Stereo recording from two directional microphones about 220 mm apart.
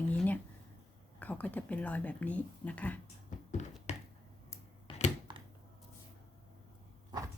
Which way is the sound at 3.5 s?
30° left (ahead or behind).